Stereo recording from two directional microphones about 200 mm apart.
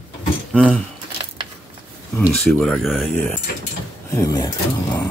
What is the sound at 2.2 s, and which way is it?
Speech, 5° left (ahead or behind).